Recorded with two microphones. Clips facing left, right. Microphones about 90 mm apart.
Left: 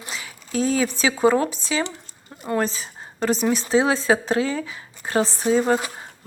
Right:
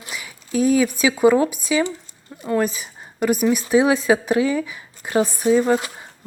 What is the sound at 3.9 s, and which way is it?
Speech, 15° right (ahead or behind).